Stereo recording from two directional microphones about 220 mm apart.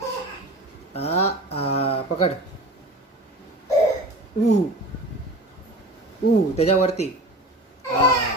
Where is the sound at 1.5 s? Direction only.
25° left (ahead or behind).